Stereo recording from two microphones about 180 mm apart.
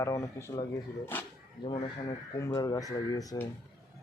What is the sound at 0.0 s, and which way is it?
Speech, 15° left (ahead or behind).